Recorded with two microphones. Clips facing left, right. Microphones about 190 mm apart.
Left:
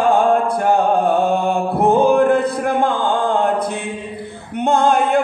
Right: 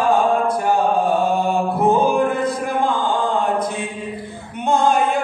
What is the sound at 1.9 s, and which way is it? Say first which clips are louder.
Music: left 4 dB; 60° left (ahead or behind).